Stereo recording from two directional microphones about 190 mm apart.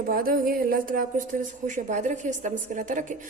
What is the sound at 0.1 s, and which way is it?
A woman's voice, 50° right (ahead or behind).